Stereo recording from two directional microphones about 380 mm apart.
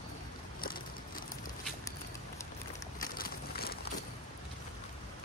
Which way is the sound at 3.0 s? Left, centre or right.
Left.